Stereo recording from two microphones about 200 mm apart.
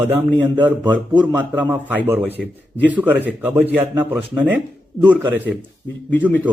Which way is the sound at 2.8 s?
10° right (ahead or behind).